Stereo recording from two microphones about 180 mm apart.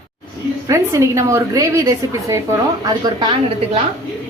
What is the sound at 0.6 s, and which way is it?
A woman's voice, 15° right (ahead or behind).